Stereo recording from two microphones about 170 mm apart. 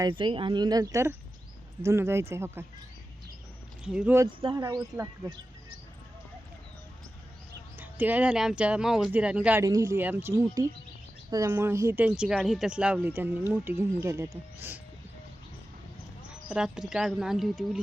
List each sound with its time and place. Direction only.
0.0 s speech: 30° right (ahead or behind)
3.8 s speech: 5° right (ahead or behind)
4.3 s speech: 30° right (ahead or behind)
7.8 s speech: 10° right (ahead or behind)
9.6 s speech: 20° right (ahead or behind)
16.5 s speech: 5° right (ahead or behind)